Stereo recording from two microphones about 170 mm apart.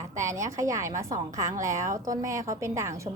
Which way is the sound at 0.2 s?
15° right (ahead or behind).